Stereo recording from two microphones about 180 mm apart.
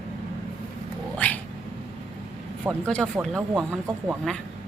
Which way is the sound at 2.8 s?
5° left (ahead or behind).